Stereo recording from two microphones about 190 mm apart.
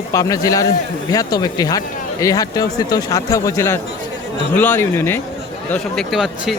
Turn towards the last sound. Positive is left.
turn(degrees=0)  # may be behind; listen again after turning